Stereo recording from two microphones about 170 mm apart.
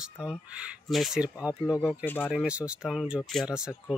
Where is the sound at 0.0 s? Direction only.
5° right (ahead or behind).